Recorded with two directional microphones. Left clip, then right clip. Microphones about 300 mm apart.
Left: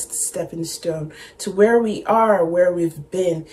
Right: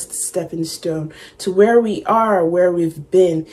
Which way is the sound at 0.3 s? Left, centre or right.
Centre.